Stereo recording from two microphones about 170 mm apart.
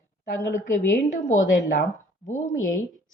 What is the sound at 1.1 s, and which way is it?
Speech, 45° left (ahead or behind).